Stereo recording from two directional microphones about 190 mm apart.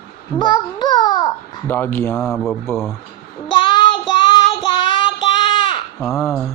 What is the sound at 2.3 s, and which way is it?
Speech, centre (ahead or behind).